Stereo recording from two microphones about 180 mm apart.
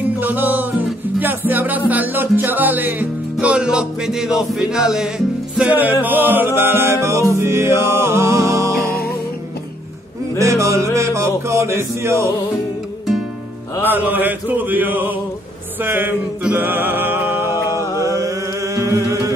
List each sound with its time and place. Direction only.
0.2 s music: 10° right (ahead or behind)
10.4 s music: 15° right (ahead or behind)
13.8 s music: 10° right (ahead or behind)